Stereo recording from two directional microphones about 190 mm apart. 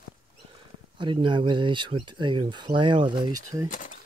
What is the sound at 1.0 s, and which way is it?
Speech, 25° right (ahead or behind).